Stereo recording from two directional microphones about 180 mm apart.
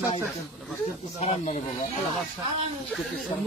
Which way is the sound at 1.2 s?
40° left (ahead or behind).